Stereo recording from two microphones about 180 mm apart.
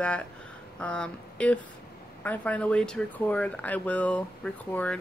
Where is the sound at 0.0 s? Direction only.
5° left (ahead or behind).